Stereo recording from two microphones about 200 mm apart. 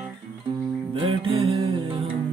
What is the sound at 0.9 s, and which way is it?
Music, 25° right (ahead or behind).